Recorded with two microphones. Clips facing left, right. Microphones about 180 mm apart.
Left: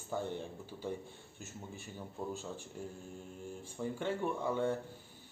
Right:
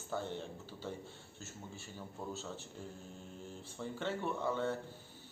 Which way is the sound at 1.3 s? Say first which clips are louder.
Left 3 dB; 15° left (ahead or behind).